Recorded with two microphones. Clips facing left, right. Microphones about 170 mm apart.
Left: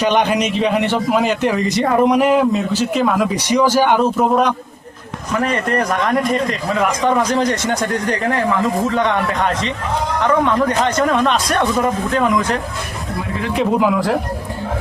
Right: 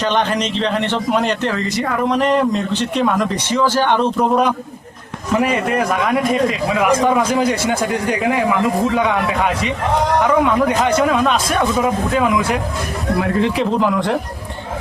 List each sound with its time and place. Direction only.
0.0 s speech: 10° left (ahead or behind)
1.8 s speech: 25° left (ahead or behind)
2.0 s a man's voice: 10° left (ahead or behind); by 12.5 s 5° right (ahead or behind)
13.7 s a man's voice: 5° left (ahead or behind)